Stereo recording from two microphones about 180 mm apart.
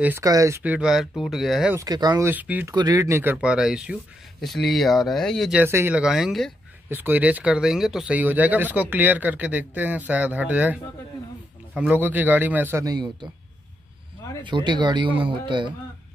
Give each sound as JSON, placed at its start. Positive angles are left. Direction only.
{"t": 0.0, "sound": "speech", "side_deg": -15}
{"t": 1.8, "sound": "speech", "side_deg": -20}
{"t": 2.2, "sound": "speech", "side_deg": -10}
{"t": 2.7, "sound": "speech", "side_deg": -20}
{"t": 5.6, "sound": "speech", "side_deg": -10}
{"t": 14.4, "sound": "speech", "side_deg": -25}